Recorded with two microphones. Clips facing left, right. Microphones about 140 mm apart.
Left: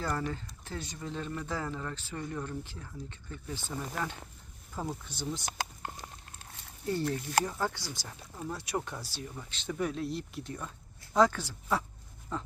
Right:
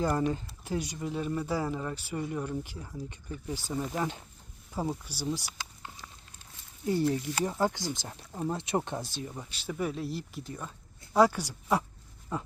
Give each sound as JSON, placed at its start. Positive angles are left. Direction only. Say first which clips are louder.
{"t": 0.0, "sound": "speech", "louder": "right 6 dB", "side_deg": -15}
{"t": 5.5, "sound": "a sound", "louder": "left 6 dB", "side_deg": 55}
{"t": 7.4, "sound": "speech", "louder": "right 5 dB", "side_deg": -15}
{"t": 8.0, "sound": "speech", "louder": "right 6 dB", "side_deg": -30}
{"t": 9.6, "sound": "speech", "louder": "even", "side_deg": -5}
{"t": 12.3, "sound": "a sound", "louder": "right 2 dB", "side_deg": -10}